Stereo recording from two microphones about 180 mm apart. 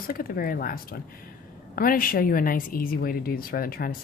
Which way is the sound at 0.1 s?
55° left (ahead or behind).